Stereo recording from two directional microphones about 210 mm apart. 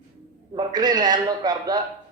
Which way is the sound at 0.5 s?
20° right (ahead or behind).